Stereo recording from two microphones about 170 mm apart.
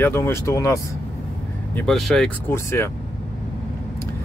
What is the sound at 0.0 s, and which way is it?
Speech, 15° left (ahead or behind).